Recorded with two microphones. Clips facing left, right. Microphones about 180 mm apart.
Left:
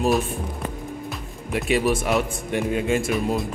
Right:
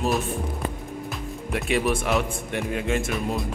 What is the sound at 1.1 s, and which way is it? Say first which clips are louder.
A man's voice: even; centre (ahead or behind).